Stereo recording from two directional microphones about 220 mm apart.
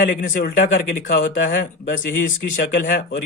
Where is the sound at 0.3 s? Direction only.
45° left (ahead or behind).